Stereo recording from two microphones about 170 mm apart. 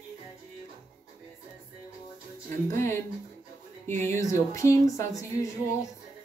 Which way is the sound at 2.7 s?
15° left (ahead or behind).